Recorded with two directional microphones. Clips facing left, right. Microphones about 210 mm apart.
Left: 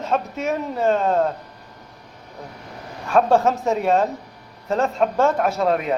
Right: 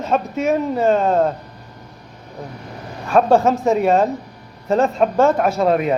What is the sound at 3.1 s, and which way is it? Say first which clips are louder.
A man's voice: right 3 dB; 5° right (ahead or behind).